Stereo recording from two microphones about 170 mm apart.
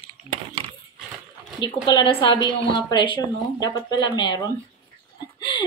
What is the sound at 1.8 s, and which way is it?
Speech, 30° left (ahead or behind).